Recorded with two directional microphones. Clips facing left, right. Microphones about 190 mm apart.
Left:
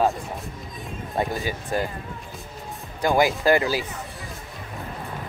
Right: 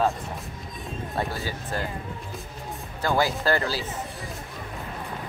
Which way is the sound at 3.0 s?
15° left (ahead or behind).